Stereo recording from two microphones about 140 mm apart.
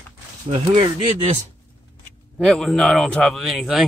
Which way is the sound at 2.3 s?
5° left (ahead or behind).